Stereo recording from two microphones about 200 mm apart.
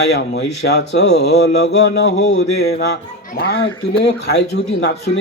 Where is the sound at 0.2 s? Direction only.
55° left (ahead or behind).